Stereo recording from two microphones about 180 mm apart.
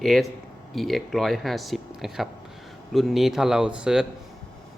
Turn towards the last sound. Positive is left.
turn(degrees=-5)  # may be behind; listen again after turning